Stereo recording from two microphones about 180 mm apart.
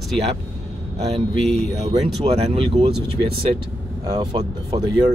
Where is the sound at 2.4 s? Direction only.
35° right (ahead or behind).